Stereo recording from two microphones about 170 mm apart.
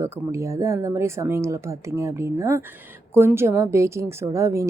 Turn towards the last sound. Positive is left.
turn(degrees=-15)  # may be behind; listen again after turning